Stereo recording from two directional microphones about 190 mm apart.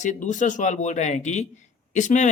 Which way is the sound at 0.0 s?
40° left (ahead or behind).